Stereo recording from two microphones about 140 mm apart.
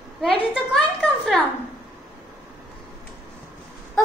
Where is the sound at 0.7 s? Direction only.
Centre (ahead or behind).